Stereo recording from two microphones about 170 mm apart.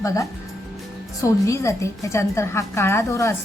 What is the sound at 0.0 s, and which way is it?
A woman's voice, 20° left (ahead or behind).